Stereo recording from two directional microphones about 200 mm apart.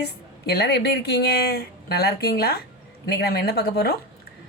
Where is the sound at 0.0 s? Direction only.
55° left (ahead or behind).